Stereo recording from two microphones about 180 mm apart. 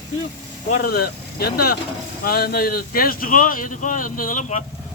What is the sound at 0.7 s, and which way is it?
Speech, 55° left (ahead or behind).